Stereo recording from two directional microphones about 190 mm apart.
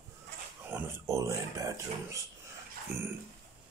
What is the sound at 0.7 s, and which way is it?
Speech, 10° right (ahead or behind).